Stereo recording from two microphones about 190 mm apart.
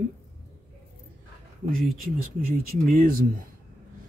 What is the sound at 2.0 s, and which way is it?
Speech, 50° right (ahead or behind).